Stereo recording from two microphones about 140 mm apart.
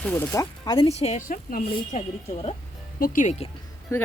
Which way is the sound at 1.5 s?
80° left.